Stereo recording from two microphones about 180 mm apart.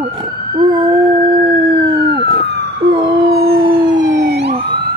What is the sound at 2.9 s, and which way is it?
Howl, 30° right (ahead or behind).